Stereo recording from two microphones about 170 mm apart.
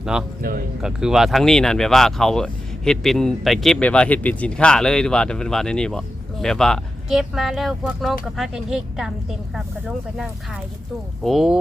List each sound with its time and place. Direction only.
0.0 s speech: 5° right (ahead or behind)